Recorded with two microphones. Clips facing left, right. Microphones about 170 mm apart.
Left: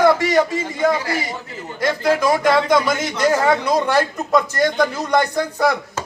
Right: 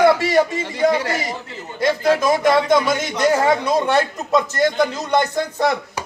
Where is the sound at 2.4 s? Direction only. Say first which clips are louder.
Even; 25° right (ahead or behind).